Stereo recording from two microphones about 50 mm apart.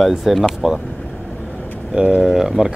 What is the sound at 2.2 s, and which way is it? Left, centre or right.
Speech, centre.